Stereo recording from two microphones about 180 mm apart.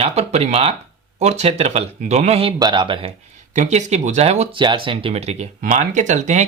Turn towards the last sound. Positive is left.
turn(degrees=-40)  # may be behind; listen again after turning